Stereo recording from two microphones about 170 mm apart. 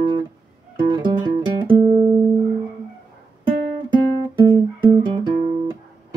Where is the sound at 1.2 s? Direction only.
30° right (ahead or behind).